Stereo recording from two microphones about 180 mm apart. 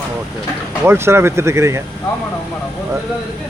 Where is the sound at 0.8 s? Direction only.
15° right (ahead or behind).